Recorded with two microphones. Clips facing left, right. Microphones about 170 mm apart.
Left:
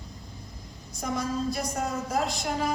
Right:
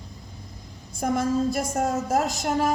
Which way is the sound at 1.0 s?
50° right (ahead or behind).